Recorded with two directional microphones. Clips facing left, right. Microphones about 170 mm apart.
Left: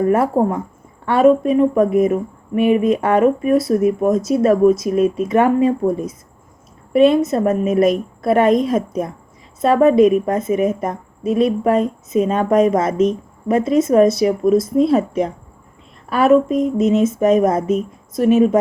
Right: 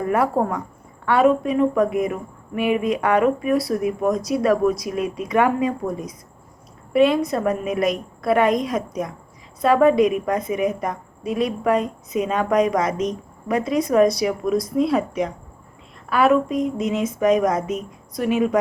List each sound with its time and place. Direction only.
0.1 s a woman's voice: 25° left (ahead or behind)
16.0 s a woman's voice: 25° left (ahead or behind)